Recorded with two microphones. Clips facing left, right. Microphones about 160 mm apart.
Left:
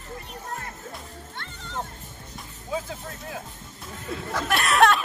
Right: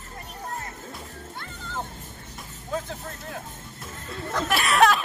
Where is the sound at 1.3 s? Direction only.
5° right (ahead or behind).